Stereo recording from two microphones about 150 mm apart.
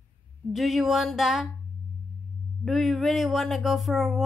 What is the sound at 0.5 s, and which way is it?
Speech, centre (ahead or behind).